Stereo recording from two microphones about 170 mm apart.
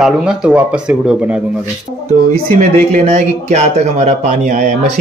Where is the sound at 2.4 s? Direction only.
40° right (ahead or behind).